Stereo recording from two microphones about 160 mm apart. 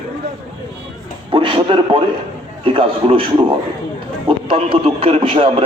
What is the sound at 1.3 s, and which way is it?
A man's voice, 30° right (ahead or behind).